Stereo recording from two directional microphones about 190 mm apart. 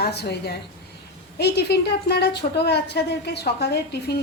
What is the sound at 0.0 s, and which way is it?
A woman's voice, 60° left (ahead or behind).